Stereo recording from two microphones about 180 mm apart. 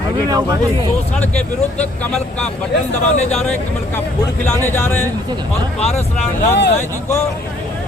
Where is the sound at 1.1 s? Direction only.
5° left (ahead or behind).